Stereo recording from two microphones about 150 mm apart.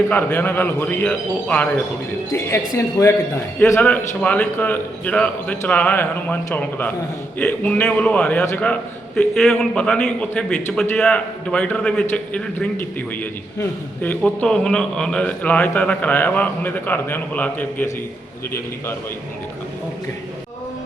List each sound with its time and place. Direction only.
0.1 s a man's voice: 10° left (ahead or behind)